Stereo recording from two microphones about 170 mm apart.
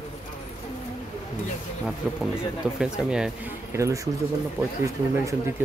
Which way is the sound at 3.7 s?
20° right (ahead or behind).